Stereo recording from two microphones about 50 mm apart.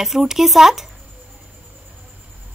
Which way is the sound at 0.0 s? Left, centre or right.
Centre.